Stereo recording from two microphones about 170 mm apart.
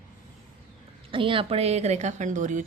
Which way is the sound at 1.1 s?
30° right (ahead or behind).